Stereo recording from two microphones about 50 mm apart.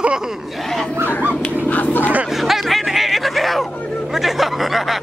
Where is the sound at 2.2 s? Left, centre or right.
Centre.